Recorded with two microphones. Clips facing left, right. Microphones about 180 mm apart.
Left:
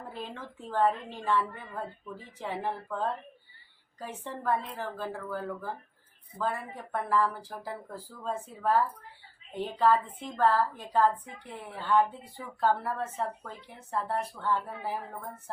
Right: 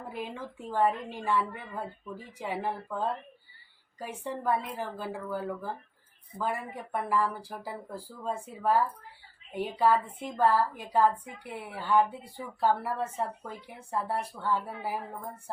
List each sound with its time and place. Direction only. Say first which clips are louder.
0.0 s a woman's voice: right 3 dB; 10° right (ahead or behind)